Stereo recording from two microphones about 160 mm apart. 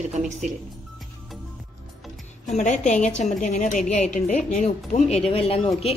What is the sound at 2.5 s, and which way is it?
A woman's voice, 45° left (ahead or behind).